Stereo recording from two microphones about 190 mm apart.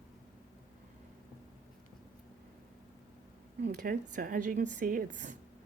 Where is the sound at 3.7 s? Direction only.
50° right (ahead or behind).